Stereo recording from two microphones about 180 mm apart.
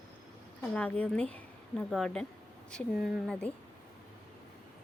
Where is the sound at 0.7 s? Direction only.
5° left (ahead or behind).